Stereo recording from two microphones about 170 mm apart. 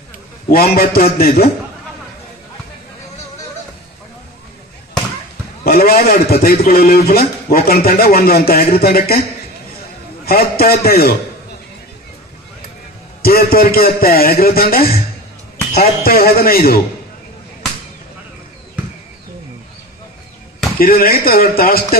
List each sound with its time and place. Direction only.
0.5 s a man's voice: 60° left (ahead or behind)
5.6 s a man's voice: 60° left (ahead or behind)
10.2 s a man's voice: 60° left (ahead or behind)
13.2 s a man's voice: 60° left (ahead or behind)
20.8 s a man's voice: 60° left (ahead or behind)